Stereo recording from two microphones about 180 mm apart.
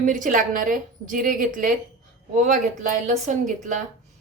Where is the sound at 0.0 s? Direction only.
45° right (ahead or behind).